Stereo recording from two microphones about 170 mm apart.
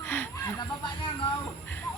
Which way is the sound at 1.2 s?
25° left (ahead or behind).